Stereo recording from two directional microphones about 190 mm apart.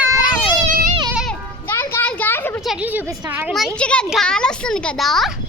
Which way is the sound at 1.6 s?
10° left (ahead or behind).